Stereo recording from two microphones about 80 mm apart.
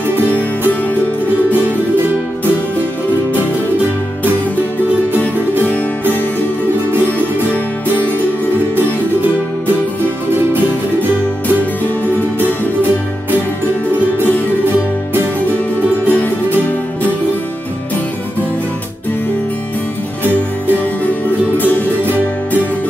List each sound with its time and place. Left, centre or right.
7.0 s music: left
16.1 s music: left
21.5 s music: left